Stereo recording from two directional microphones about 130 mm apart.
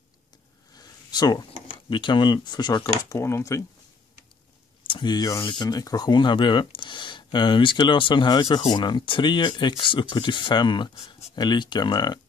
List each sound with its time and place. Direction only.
0.7 s a sound: 30° left (ahead or behind)
1.9 s speech: 40° left (ahead or behind)
3.1 s speech: 20° left (ahead or behind)
4.8 s speech: 35° left (ahead or behind)